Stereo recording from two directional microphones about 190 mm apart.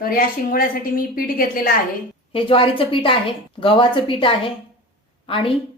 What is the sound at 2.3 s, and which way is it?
A woman's voice, 30° left (ahead or behind).